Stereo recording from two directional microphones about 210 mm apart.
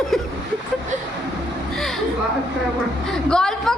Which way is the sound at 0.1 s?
Centre (ahead or behind).